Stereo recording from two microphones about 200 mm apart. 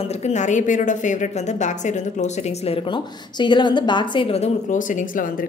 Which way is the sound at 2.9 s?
25° left (ahead or behind).